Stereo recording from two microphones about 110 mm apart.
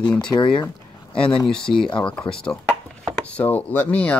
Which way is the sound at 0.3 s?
45° left (ahead or behind).